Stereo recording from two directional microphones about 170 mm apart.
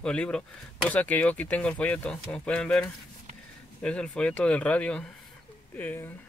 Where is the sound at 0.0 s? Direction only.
5° left (ahead or behind).